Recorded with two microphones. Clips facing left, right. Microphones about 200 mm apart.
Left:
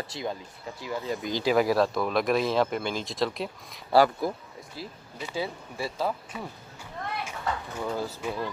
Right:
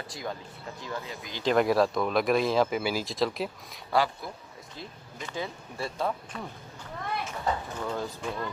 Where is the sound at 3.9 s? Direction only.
45° left (ahead or behind).